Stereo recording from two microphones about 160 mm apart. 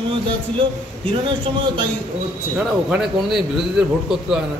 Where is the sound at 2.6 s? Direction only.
Centre (ahead or behind).